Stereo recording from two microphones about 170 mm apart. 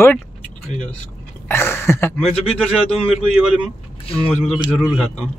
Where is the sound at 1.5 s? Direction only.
15° left (ahead or behind).